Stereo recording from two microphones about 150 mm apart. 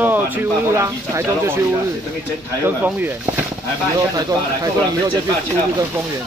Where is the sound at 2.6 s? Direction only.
10° right (ahead or behind).